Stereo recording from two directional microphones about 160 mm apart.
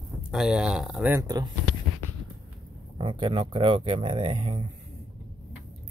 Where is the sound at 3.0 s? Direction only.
35° right (ahead or behind).